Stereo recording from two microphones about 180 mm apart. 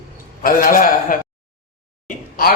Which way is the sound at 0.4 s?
50° left (ahead or behind).